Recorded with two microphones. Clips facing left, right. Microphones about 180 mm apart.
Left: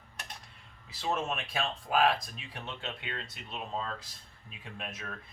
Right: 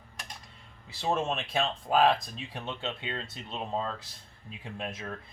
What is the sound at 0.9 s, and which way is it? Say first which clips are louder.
Speech: right 3 dB; 30° right (ahead or behind).